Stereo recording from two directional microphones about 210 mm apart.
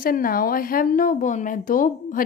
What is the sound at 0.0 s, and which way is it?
A woman's voice, 40° left (ahead or behind).